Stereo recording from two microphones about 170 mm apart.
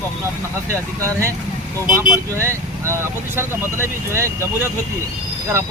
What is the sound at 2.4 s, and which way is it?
Speech, 15° right (ahead or behind).